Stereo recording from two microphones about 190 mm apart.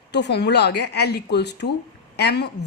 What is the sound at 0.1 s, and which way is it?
Speech, 65° left (ahead or behind).